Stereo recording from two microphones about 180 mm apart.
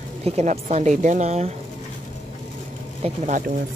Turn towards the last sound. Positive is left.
turn(degrees=-45)  # may be behind; listen again after turning